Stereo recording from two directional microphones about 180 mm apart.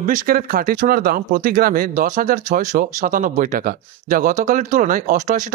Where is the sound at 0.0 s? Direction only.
45° right (ahead or behind).